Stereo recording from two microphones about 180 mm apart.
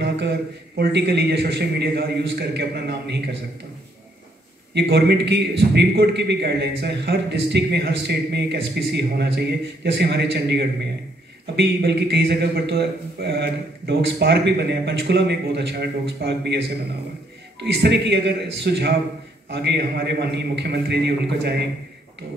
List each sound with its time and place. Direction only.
0.0 s a man's voice: 70° right (ahead or behind)
4.7 s a man's voice: 70° right (ahead or behind)